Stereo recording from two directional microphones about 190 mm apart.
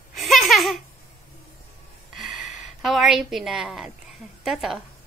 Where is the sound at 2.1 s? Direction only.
Centre (ahead or behind).